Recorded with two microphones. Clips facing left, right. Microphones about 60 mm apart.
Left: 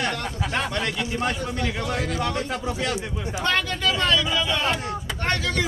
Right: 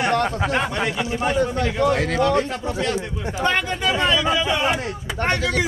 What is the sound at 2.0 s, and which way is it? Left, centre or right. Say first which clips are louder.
Speech: right 5 dB; right.